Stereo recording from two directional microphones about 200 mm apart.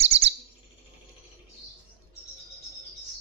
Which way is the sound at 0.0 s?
30° right (ahead or behind).